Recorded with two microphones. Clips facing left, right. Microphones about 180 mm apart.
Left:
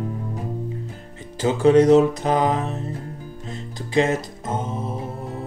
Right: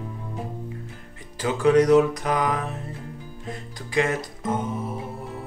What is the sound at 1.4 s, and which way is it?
Music, 25° left (ahead or behind).